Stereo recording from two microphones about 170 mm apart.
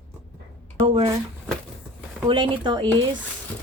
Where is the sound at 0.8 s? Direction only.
30° right (ahead or behind).